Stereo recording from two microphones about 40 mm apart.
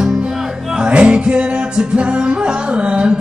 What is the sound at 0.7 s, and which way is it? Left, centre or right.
Music, right.